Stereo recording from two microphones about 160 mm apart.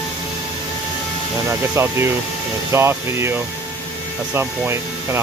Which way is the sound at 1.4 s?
15° right (ahead or behind).